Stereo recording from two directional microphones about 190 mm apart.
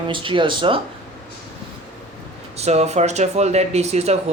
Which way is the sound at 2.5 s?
35° right (ahead or behind).